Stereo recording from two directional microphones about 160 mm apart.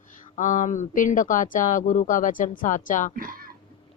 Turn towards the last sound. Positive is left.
turn(degrees=-65)  # may be behind; listen again after turning